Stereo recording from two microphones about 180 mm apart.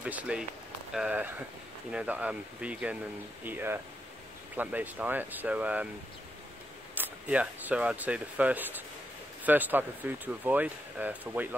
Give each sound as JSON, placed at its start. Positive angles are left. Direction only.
{"t": 0.0, "sound": "speech", "side_deg": -5}
{"t": 7.0, "sound": "speech", "side_deg": -10}